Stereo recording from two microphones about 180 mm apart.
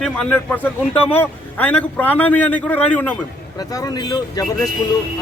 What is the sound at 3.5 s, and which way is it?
Speech, 20° left (ahead or behind).